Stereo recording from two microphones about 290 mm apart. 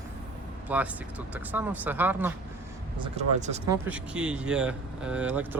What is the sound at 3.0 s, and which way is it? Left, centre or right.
Speech, right.